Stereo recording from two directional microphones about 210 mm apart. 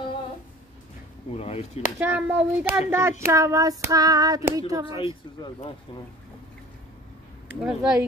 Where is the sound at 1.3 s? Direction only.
30° left (ahead or behind).